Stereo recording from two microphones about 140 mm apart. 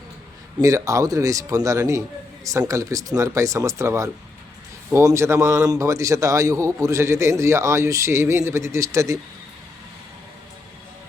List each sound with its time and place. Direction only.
0.6 s a man's voice: 25° right (ahead or behind)